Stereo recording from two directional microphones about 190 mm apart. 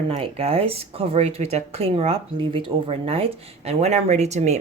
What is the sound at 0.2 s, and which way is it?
Speech, 30° right (ahead or behind).